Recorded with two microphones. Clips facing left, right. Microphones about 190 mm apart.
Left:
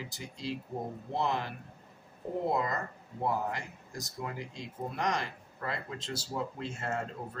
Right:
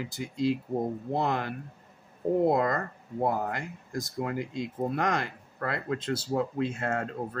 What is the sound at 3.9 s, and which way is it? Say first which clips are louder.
Speech: right 8 dB; 60° right (ahead or behind).